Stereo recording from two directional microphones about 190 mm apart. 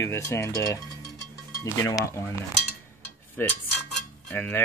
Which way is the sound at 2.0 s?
15° left (ahead or behind).